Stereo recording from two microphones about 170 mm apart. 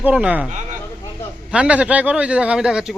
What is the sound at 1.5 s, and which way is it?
A man's voice, 5° right (ahead or behind).